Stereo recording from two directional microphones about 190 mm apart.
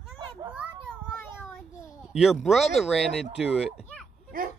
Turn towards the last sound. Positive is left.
turn(degrees=-50)  # may be behind; listen again after turning